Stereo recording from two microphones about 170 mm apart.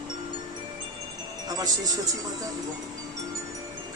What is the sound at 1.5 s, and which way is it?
Speech, 20° right (ahead or behind).